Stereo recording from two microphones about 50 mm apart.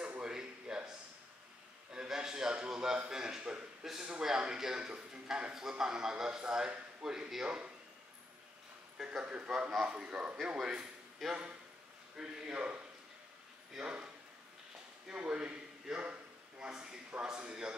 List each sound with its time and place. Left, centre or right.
0.2 s a sound: centre
2.0 s a sound: centre
3.8 s a man's voice: centre
7.4 s a man's voice: right
8.9 s a man's voice: centre
9.2 s a man's voice: right
11.2 s speech: centre
12.2 s a man's voice: centre
15.1 s a sound: right
17.2 s a man's voice: centre